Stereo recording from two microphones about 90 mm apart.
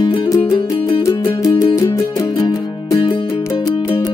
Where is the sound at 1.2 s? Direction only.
35° left (ahead or behind).